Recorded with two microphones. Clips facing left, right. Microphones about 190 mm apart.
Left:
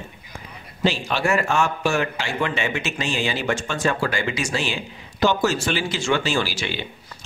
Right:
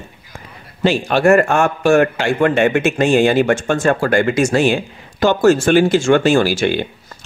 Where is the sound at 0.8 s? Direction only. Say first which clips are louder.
Right 7 dB; 55° right (ahead or behind).